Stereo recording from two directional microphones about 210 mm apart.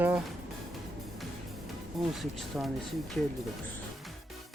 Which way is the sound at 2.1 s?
Centre (ahead or behind).